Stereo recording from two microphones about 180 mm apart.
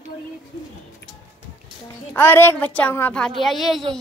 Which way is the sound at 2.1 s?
10° left (ahead or behind).